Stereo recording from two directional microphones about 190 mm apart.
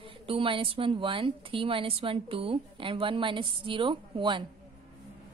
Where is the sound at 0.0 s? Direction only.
30° right (ahead or behind).